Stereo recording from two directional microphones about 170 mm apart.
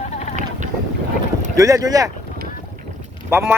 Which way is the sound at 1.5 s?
20° right (ahead or behind).